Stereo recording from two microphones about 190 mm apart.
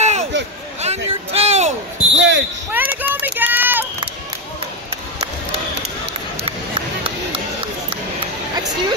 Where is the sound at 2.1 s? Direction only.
70° right (ahead or behind).